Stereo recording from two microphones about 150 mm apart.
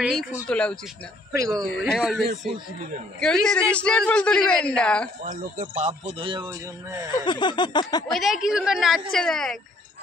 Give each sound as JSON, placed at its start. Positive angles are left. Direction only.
{"t": 0.5, "sound": "a woman's voice", "side_deg": 5}
{"t": 5.2, "sound": "speech", "side_deg": -65}
{"t": 6.1, "sound": "speech", "side_deg": -35}
{"t": 7.1, "sound": "a sound", "side_deg": 30}
{"t": 8.1, "sound": "a woman's voice", "side_deg": 0}